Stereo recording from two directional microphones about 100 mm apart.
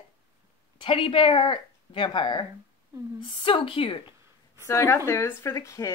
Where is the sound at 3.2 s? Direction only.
65° left (ahead or behind).